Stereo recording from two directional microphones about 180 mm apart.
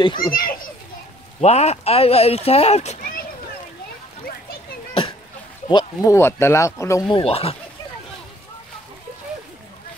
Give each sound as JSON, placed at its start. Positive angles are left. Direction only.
{"t": 0.0, "sound": "speech", "side_deg": 25}
{"t": 0.3, "sound": "a child's voice", "side_deg": 50}
{"t": 1.4, "sound": "speech", "side_deg": 35}
{"t": 5.7, "sound": "speech", "side_deg": 20}